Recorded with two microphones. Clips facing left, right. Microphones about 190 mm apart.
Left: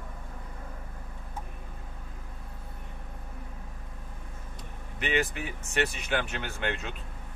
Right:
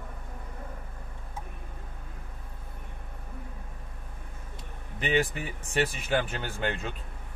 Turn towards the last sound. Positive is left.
turn(degrees=-35)  # may be behind; listen again after turning